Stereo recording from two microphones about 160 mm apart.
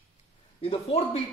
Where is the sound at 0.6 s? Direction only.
40° left (ahead or behind).